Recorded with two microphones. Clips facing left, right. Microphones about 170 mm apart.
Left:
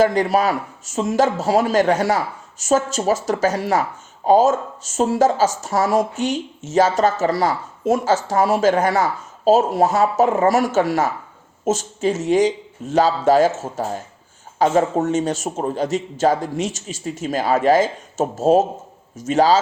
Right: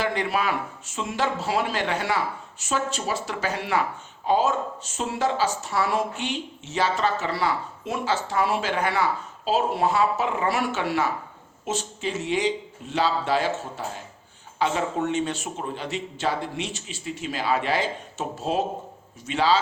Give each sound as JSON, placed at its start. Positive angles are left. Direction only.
{"t": 0.0, "sound": "a man's voice", "side_deg": 40}